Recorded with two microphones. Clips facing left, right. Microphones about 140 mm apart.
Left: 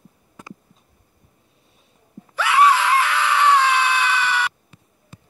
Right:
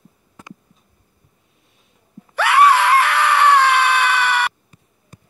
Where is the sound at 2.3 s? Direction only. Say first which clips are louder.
Right 3 dB; 65° right (ahead or behind).